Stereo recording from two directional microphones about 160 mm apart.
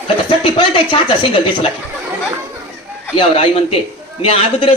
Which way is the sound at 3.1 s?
35° left (ahead or behind).